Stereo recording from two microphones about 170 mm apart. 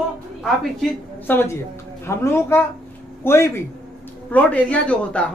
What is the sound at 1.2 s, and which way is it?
Speech, 15° left (ahead or behind).